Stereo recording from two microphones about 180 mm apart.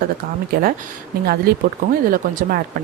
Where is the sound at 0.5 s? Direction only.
60° right (ahead or behind).